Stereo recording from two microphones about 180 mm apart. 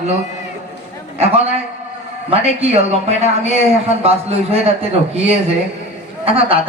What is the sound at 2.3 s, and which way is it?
A man's voice, 35° right (ahead or behind).